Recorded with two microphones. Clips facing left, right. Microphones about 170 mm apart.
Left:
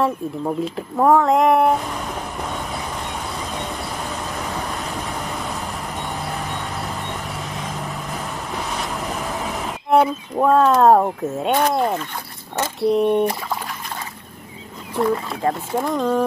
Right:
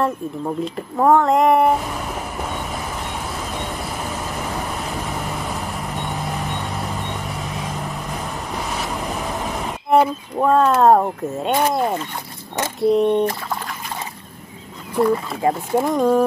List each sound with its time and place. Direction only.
0.0 s a sound: centre (ahead or behind)
12.8 s speech: centre (ahead or behind)
15.4 s speech: 10° right (ahead or behind)